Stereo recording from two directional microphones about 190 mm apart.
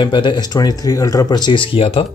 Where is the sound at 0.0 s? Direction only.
25° left (ahead or behind).